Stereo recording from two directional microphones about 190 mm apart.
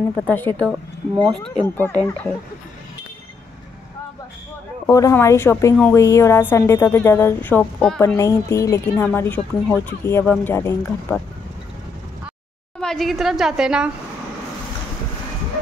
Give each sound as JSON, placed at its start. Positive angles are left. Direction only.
{"t": 0.2, "sound": "speech", "side_deg": 10}
{"t": 0.7, "sound": "a woman's voice", "side_deg": -5}
{"t": 4.8, "sound": "speech", "side_deg": 15}
{"t": 8.2, "sound": "speech", "side_deg": 15}
{"t": 12.8, "sound": "a woman's voice", "side_deg": 0}